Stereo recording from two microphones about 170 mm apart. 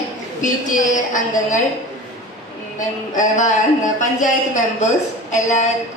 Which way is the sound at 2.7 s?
50° left (ahead or behind).